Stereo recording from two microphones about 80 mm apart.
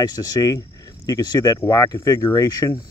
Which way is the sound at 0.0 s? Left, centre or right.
Left.